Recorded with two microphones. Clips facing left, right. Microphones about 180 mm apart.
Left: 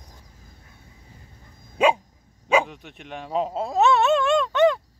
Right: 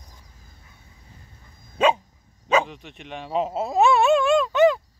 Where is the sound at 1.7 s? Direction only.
10° left (ahead or behind).